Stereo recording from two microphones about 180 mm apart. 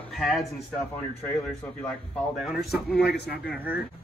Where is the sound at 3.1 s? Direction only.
65° left (ahead or behind).